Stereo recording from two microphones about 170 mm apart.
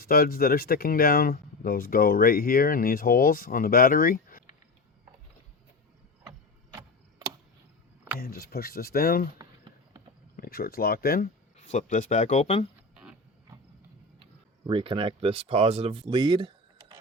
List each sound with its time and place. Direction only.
0.0 s speech: 60° left (ahead or behind)
8.2 s speech: 65° left (ahead or behind)
10.3 s speech: 60° left (ahead or behind)
11.5 s speech: 45° left (ahead or behind)
14.7 s speech: 30° right (ahead or behind)